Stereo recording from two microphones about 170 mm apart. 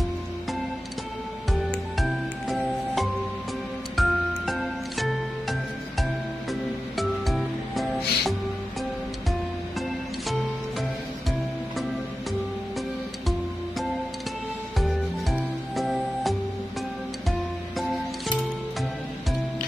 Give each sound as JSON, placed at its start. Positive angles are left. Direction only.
{"t": 1.5, "sound": "music", "side_deg": 0}
{"t": 14.8, "sound": "music", "side_deg": 0}
{"t": 17.7, "sound": "music", "side_deg": 0}